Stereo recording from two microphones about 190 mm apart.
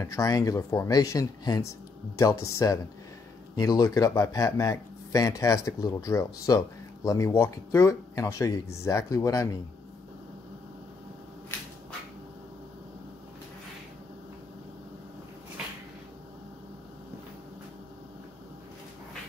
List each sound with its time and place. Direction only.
0.0 s speech: 15° left (ahead or behind)